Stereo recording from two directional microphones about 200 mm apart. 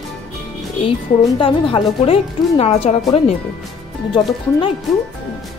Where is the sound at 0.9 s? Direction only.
25° left (ahead or behind).